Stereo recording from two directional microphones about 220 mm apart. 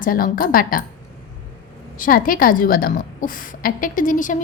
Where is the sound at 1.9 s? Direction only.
40° left (ahead or behind).